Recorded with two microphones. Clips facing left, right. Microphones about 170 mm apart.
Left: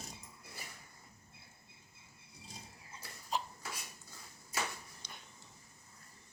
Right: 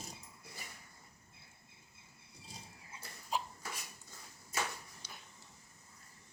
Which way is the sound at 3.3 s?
10° right (ahead or behind).